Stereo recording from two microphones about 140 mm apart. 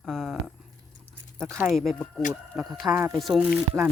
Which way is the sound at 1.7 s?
Centre (ahead or behind).